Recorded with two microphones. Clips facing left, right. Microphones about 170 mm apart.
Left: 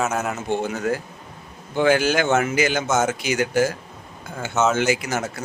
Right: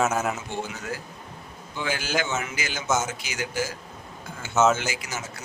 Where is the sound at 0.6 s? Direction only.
55° left (ahead or behind).